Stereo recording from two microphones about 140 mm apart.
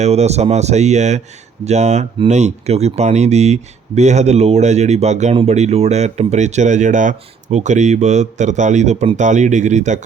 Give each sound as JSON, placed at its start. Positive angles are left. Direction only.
{"t": 0.0, "sound": "speech", "side_deg": -50}